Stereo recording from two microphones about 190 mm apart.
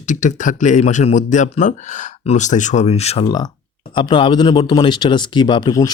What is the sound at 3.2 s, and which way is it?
Speech, 20° left (ahead or behind).